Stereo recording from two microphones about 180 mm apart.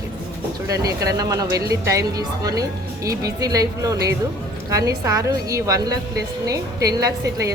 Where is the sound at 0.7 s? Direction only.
20° right (ahead or behind).